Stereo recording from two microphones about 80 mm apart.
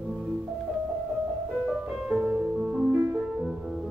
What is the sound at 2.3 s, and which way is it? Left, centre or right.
Music, centre.